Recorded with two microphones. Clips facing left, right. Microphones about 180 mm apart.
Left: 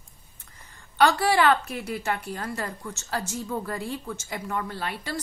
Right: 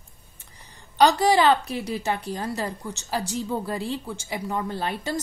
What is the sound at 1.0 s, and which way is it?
A woman's voice, 15° right (ahead or behind).